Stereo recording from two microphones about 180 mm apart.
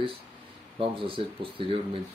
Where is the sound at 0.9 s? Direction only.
30° right (ahead or behind).